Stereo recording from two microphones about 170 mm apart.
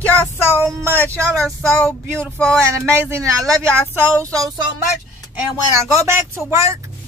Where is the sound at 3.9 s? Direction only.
20° right (ahead or behind).